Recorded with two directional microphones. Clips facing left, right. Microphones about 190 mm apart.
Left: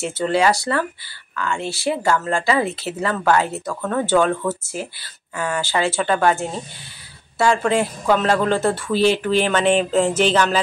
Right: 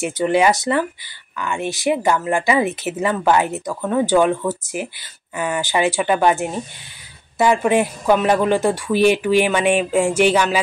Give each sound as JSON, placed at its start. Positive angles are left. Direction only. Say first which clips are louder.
{"t": 0.0, "sound": "speech", "louder": "right 2 dB", "side_deg": -15}